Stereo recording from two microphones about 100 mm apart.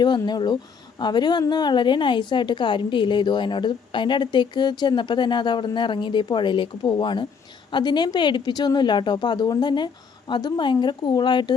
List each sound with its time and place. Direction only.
0.0 s speech: 45° left (ahead or behind)